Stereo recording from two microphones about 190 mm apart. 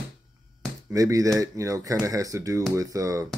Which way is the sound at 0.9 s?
20° right (ahead or behind).